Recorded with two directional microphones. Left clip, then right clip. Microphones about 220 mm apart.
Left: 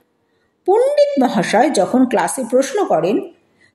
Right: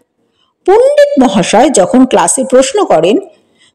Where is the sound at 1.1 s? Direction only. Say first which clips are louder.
Right 7 dB; 35° right (ahead or behind).